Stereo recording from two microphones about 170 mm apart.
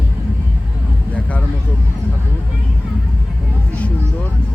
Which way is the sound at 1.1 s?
10° left (ahead or behind).